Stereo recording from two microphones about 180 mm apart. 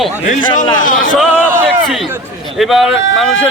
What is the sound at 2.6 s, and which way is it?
Speech, centre (ahead or behind).